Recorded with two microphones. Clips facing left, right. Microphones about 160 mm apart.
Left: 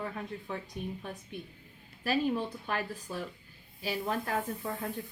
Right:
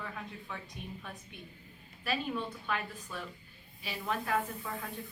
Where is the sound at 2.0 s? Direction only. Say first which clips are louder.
Left 5 dB; 40° left (ahead or behind).